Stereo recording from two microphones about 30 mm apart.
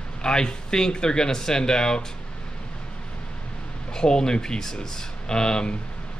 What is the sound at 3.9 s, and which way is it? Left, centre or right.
Speech, left.